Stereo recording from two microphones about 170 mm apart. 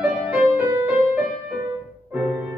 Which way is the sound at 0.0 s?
10° right (ahead or behind).